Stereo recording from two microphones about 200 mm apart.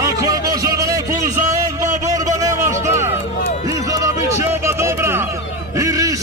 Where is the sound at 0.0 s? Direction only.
15° right (ahead or behind).